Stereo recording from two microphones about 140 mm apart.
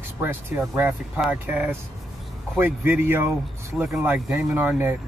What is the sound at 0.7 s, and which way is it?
Speech, 15° right (ahead or behind).